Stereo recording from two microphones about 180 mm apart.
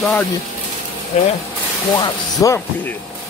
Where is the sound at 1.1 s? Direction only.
40° left (ahead or behind).